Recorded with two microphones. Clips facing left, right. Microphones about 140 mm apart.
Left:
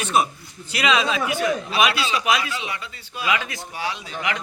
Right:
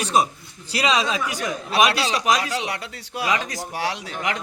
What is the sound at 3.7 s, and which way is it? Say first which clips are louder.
Speech: right 2 dB; 75° right (ahead or behind).